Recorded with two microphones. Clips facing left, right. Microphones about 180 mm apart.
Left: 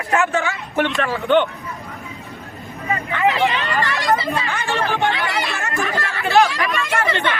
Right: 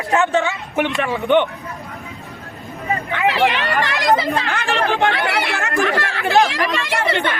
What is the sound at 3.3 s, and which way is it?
Speech, 70° right (ahead or behind).